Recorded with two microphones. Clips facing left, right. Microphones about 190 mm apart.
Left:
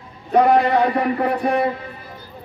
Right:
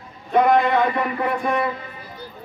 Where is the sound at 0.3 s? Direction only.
35° left (ahead or behind).